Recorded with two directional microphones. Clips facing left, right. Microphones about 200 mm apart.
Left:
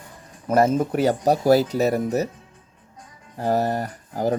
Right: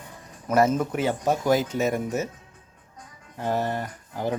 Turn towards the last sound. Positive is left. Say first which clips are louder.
# left 5 dB
turn(degrees=40)  # may be behind; listen again after turning